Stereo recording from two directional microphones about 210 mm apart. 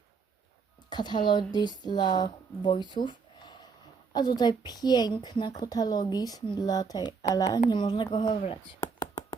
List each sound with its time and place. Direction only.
0.9 s a woman's voice: 20° left (ahead or behind)